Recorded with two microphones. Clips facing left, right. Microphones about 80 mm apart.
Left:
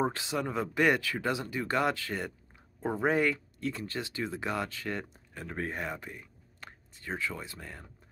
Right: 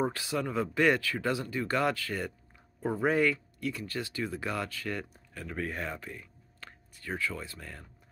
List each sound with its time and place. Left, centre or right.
0.0 s speech: left